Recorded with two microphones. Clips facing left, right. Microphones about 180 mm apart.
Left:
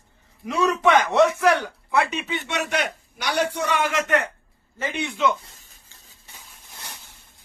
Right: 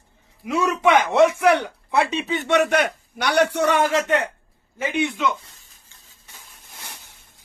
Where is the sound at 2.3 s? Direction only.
50° right (ahead or behind); by 3.7 s 70° right (ahead or behind).